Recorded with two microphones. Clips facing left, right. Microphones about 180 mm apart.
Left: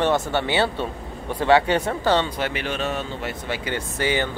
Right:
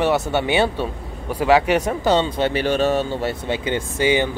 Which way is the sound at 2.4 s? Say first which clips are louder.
Right 7 dB; 30° right (ahead or behind).